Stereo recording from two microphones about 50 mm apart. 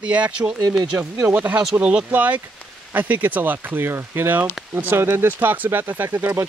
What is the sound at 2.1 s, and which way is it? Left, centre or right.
Speech, right.